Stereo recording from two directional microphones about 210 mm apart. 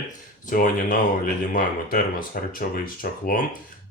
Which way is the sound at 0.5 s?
40° left (ahead or behind).